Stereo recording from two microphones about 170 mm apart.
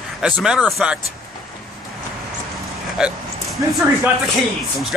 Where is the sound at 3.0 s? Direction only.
Centre (ahead or behind).